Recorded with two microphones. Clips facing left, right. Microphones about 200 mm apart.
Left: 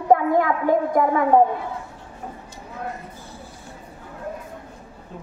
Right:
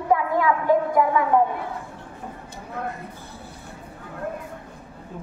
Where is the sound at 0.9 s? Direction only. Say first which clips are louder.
Left 2 dB; 50° left (ahead or behind).